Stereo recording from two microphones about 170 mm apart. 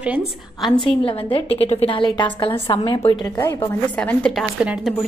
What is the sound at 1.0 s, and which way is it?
A woman's voice, 35° left (ahead or behind).